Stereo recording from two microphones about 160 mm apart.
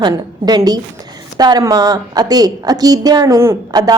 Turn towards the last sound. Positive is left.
turn(degrees=-25)  # may be behind; listen again after turning